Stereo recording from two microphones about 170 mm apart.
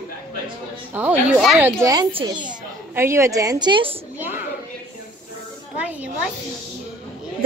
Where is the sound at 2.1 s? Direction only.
25° right (ahead or behind).